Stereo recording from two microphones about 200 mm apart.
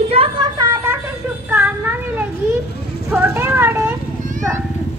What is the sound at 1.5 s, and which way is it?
Child singing, 10° right (ahead or behind).